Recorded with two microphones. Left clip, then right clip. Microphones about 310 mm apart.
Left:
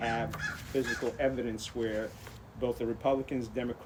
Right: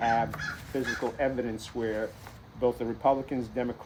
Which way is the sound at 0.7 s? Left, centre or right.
Centre.